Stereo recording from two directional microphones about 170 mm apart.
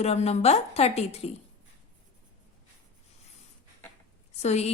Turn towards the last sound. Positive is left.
turn(degrees=40)  # may be behind; listen again after turning